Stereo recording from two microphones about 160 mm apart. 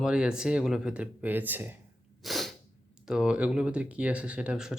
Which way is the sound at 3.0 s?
5° right (ahead or behind).